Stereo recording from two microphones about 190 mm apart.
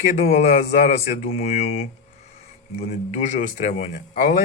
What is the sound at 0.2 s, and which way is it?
Speech, 35° left (ahead or behind).